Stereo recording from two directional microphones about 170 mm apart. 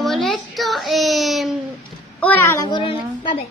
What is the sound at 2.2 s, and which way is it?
A child's voice, 10° left (ahead or behind).